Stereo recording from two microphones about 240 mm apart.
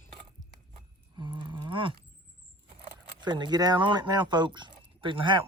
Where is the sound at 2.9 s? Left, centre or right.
Centre.